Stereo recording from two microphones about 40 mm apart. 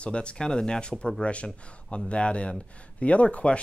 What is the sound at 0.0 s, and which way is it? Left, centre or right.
Speech, left.